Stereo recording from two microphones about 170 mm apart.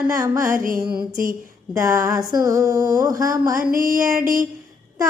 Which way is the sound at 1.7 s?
20° right (ahead or behind).